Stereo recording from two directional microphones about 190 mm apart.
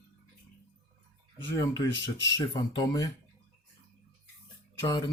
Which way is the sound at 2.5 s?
20° left (ahead or behind).